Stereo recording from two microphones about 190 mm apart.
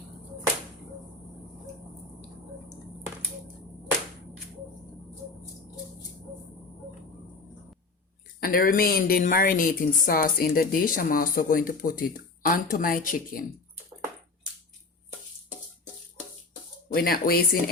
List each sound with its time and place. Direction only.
8.4 s a woman's voice: 50° left (ahead or behind)
16.9 s a woman's voice: 50° left (ahead or behind)